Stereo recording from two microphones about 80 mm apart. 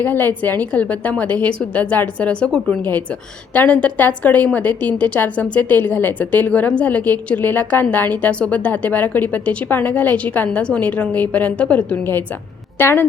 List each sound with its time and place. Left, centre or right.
0.0 s a woman's voice: left